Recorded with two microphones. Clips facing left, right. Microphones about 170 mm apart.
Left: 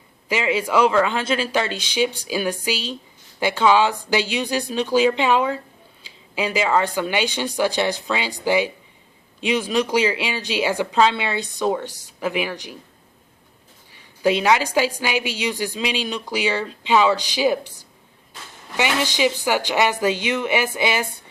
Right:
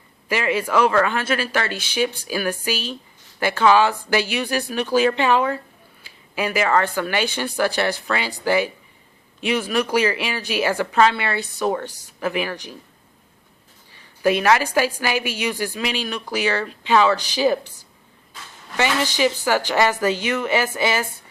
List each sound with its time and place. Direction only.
0.3 s speech: 15° left (ahead or behind)
13.9 s speech: 15° left (ahead or behind)
19.1 s speech: 15° left (ahead or behind)